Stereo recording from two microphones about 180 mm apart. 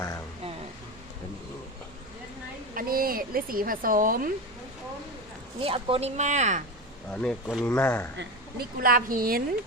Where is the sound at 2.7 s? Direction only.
55° right (ahead or behind).